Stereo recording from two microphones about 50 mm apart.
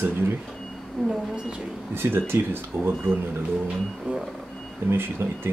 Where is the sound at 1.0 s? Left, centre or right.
Centre.